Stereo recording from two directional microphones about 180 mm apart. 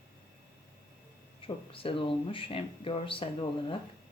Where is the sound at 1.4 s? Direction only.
30° left (ahead or behind).